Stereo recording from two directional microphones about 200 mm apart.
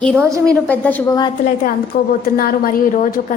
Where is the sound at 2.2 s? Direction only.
45° left (ahead or behind).